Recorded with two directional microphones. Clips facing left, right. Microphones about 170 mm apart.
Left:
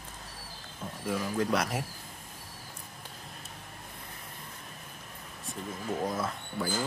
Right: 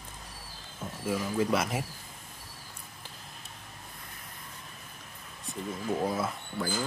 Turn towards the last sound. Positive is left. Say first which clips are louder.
# right 1 dB
turn(degrees=-5)  # may be behind; listen again after turning